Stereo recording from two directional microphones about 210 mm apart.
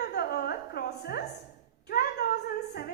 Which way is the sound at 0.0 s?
50° left (ahead or behind).